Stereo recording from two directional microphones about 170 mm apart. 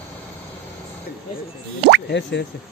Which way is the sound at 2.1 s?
85° left.